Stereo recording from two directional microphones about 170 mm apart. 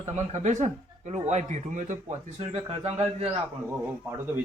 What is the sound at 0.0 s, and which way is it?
Speech, 40° right (ahead or behind).